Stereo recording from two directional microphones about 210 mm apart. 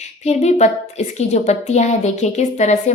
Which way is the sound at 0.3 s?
30° left (ahead or behind).